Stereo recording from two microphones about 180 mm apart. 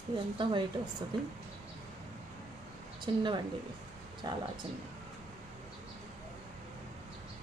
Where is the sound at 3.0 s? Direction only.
25° right (ahead or behind).